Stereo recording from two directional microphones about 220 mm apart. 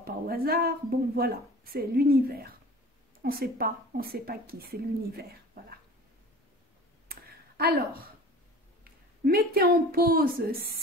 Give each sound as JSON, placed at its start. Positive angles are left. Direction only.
{"t": 0.0, "sound": "a woman's voice", "side_deg": -45}
{"t": 7.1, "sound": "a sound", "side_deg": -45}
{"t": 8.8, "sound": "a woman's voice", "side_deg": -45}